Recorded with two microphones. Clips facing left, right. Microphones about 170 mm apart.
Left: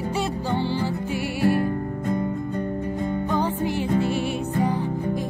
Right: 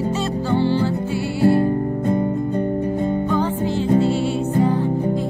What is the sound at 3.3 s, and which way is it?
Music, 15° left (ahead or behind).